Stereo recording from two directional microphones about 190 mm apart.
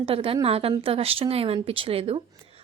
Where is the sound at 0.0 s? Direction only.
30° right (ahead or behind).